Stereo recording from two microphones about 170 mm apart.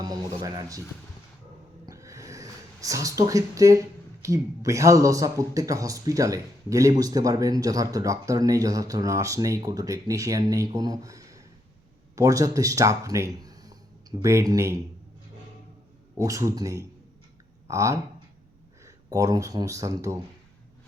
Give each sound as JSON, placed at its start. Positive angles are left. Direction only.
{"t": 0.0, "sound": "a sound", "side_deg": -20}
{"t": 1.9, "sound": "speech", "side_deg": -20}
{"t": 16.1, "sound": "speech", "side_deg": -20}